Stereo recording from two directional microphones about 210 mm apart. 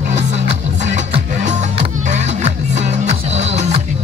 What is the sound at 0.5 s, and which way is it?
Music, 35° right (ahead or behind).